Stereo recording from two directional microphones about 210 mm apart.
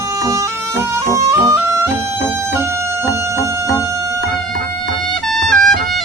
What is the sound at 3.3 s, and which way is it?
Music, 15° right (ahead or behind).